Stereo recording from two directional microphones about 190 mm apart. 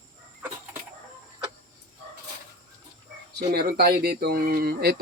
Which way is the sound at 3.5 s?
55° right (ahead or behind).